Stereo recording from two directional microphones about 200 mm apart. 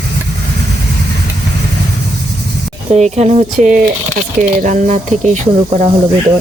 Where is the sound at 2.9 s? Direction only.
35° right (ahead or behind).